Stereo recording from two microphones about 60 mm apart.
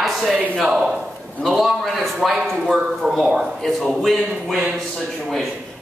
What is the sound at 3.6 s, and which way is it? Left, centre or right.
A man's voice, centre.